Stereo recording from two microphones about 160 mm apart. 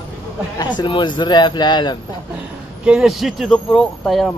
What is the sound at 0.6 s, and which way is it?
Speech, 30° left (ahead or behind).